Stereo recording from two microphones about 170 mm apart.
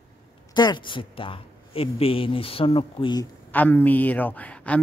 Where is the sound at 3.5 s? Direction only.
10° left (ahead or behind).